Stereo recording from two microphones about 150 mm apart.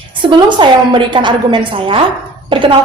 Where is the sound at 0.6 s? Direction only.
30° right (ahead or behind).